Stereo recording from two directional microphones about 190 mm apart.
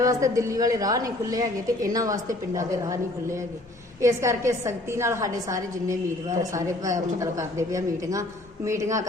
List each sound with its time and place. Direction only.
0.0 s a woman's voice: 20° right (ahead or behind)
4.0 s a woman's voice: 15° right (ahead or behind)